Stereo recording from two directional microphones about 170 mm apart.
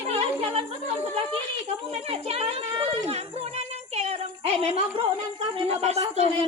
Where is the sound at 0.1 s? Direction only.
35° right (ahead or behind).